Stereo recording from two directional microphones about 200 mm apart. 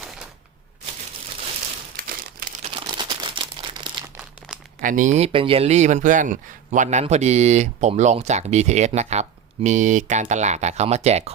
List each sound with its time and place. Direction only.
2.0 s crumpling: 45° right (ahead or behind)
2.7 s crumpling: 25° right (ahead or behind)
4.2 s crumpling: 5° right (ahead or behind)
4.8 s speech: 40° right (ahead or behind)